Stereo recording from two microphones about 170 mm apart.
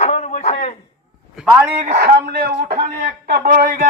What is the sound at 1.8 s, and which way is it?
Speech, 55° right (ahead or behind).